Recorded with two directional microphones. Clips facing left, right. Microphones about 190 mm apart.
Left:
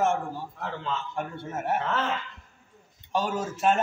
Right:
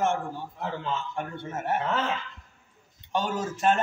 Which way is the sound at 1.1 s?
5° left (ahead or behind).